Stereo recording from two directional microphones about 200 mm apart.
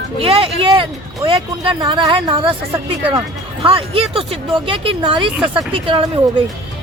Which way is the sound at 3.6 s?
30° right (ahead or behind).